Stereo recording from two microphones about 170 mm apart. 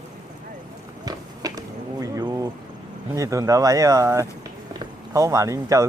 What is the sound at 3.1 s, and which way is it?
Speech, 20° right (ahead or behind).